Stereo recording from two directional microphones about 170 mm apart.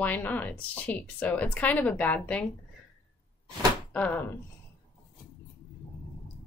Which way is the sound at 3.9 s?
10° left (ahead or behind).